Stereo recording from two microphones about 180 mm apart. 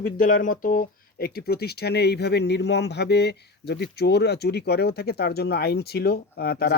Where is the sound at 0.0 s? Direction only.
50° left (ahead or behind).